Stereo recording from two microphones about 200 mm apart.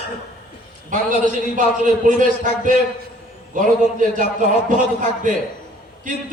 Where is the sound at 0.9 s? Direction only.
40° right (ahead or behind).